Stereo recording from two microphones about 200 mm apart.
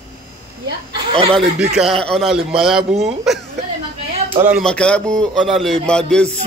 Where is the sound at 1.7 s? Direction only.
Centre (ahead or behind).